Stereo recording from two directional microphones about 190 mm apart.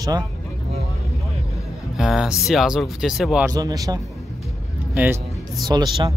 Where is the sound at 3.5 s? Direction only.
20° right (ahead or behind).